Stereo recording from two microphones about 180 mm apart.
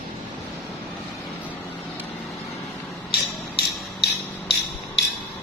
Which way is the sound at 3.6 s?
65° left (ahead or behind).